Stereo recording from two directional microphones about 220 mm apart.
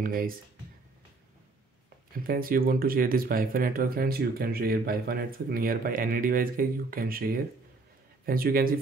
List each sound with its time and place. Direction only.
0.0 s speech: 40° right (ahead or behind)
2.2 s speech: 40° right (ahead or behind)
8.3 s speech: 40° right (ahead or behind)